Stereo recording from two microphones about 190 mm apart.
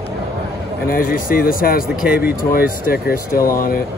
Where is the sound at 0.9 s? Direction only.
45° left (ahead or behind).